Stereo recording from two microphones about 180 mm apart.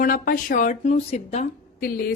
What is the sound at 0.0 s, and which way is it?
Speech, 50° left (ahead or behind).